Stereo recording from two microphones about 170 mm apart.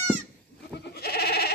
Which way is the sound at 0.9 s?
70° left (ahead or behind).